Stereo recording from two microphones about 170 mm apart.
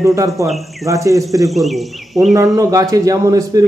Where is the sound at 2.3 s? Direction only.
20° right (ahead or behind).